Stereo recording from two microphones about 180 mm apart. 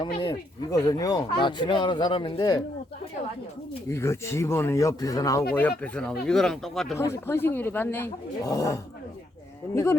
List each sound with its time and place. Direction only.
0.0 s speech: 25° left (ahead or behind)
3.8 s speech: 15° left (ahead or behind)
6.9 s speech: 15° left (ahead or behind)